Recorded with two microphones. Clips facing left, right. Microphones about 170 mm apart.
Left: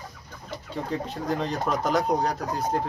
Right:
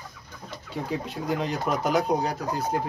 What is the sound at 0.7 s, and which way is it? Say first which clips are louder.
Speech: even; 5° right (ahead or behind).